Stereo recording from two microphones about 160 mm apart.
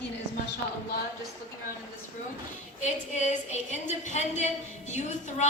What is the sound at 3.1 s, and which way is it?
A woman's voice, 50° left (ahead or behind).